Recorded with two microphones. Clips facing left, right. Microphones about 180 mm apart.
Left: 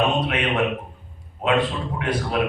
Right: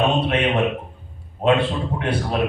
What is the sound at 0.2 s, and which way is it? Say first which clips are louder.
A man's voice: right 3 dB; 30° right (ahead or behind).